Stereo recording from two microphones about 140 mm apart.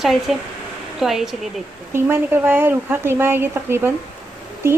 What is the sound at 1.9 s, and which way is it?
Speech, 15° right (ahead or behind).